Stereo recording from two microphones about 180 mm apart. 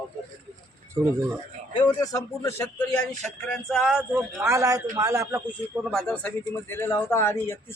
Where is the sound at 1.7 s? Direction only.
20° left (ahead or behind); by 5.4 s 15° right (ahead or behind).